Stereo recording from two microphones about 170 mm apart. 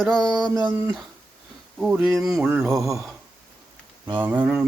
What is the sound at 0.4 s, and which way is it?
Speech, 25° right (ahead or behind).